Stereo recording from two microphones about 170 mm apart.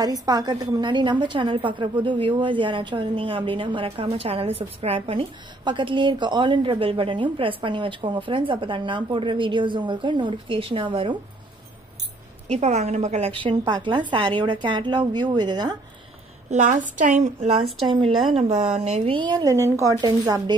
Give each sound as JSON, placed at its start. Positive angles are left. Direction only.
{"t": 0.0, "sound": "a woman's voice", "side_deg": -20}
{"t": 12.4, "sound": "a woman's voice", "side_deg": -40}
{"t": 16.4, "sound": "a woman's voice", "side_deg": -45}